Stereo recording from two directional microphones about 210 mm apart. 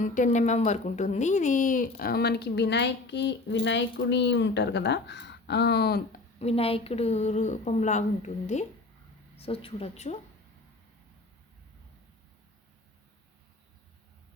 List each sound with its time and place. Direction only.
0.0 s speech: 35° left (ahead or behind)
6.4 s a woman's voice: 30° left (ahead or behind)